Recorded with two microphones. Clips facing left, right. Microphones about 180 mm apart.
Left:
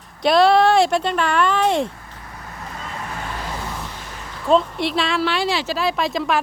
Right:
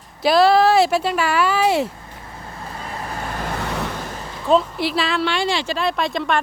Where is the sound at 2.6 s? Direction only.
35° right (ahead or behind).